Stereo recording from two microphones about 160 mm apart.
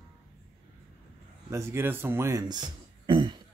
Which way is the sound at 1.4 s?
15° right (ahead or behind).